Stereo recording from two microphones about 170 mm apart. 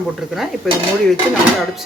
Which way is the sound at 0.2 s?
Centre (ahead or behind).